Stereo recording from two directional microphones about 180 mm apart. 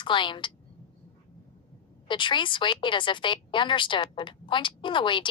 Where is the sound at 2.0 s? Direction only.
25° left (ahead or behind).